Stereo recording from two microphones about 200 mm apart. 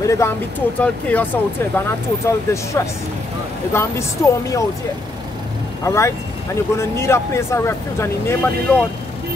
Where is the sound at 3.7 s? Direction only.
15° left (ahead or behind).